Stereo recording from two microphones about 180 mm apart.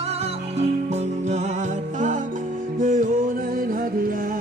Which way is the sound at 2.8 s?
50° right (ahead or behind).